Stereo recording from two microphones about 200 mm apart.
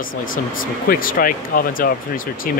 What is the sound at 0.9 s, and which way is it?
Speech, 45° left (ahead or behind).